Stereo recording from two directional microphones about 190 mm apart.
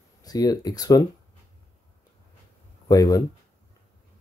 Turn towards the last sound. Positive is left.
turn(degrees=20)  # may be behind; listen again after turning